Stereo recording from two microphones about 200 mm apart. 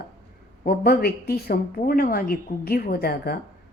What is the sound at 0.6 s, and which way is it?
Speech, 50° left (ahead or behind).